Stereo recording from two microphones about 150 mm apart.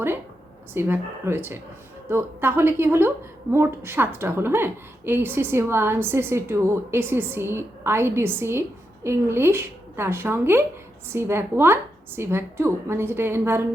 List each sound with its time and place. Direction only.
0.7 s a woman's voice: 15° right (ahead or behind)